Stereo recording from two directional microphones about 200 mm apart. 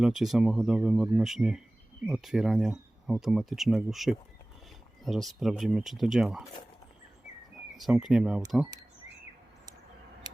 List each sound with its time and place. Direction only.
0.0 s speech: centre (ahead or behind)
7.8 s speech: centre (ahead or behind)